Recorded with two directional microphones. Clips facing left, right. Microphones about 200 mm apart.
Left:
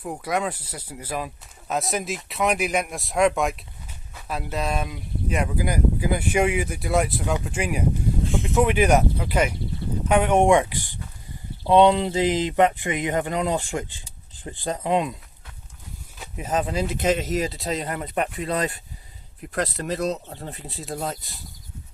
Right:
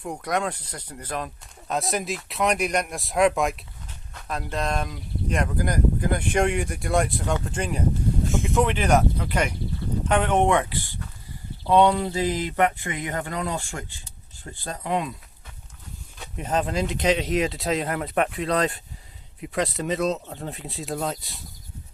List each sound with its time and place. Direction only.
0.0 s speech: 5° left (ahead or behind)
8.3 s speech: 5° right (ahead or behind)
8.5 s speech: 10° left (ahead or behind)
16.1 s speech: 5° left (ahead or behind)